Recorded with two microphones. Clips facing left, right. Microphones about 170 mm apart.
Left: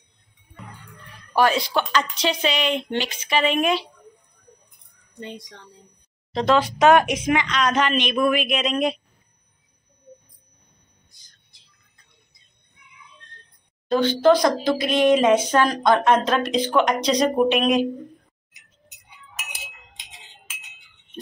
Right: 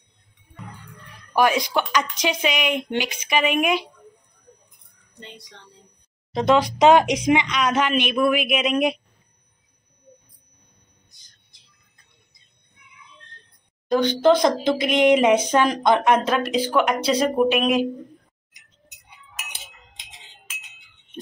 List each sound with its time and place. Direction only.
1.3 s speech: 15° right (ahead or behind)
6.3 s speech: 15° right (ahead or behind)
13.8 s a woman's voice: 15° right (ahead or behind)